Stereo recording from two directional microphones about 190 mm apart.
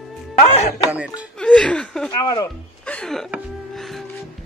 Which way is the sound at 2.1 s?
20° left (ahead or behind).